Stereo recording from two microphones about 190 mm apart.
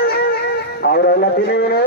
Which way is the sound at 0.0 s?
55° left (ahead or behind).